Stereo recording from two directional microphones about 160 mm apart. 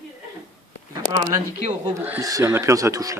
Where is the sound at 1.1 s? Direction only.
40° right (ahead or behind).